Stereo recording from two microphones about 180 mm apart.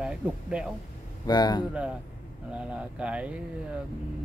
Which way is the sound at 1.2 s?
20° left (ahead or behind).